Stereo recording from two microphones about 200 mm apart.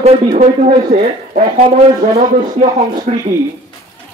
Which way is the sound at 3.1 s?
35° right (ahead or behind).